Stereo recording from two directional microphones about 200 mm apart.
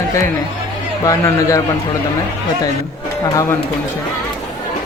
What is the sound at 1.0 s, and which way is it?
Speech, 15° left (ahead or behind).